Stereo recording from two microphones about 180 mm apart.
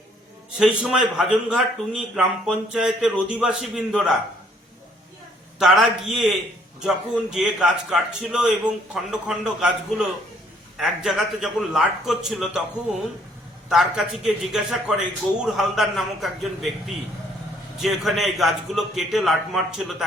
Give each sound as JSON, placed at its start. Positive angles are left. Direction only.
{"t": 0.6, "sound": "a man's voice", "side_deg": -5}
{"t": 5.5, "sound": "a man's voice", "side_deg": 0}